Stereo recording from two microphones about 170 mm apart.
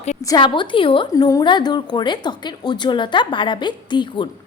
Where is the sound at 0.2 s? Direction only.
25° left (ahead or behind).